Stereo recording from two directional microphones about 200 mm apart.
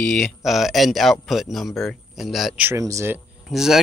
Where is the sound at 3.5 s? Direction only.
Centre (ahead or behind).